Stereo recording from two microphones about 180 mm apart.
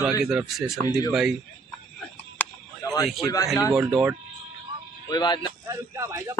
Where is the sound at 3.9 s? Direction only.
10° right (ahead or behind).